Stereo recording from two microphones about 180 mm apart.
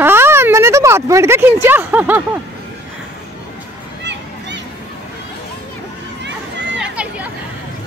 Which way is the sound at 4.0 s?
75° right (ahead or behind).